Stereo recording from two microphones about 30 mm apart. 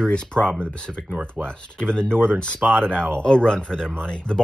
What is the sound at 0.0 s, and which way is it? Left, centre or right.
Speech, left.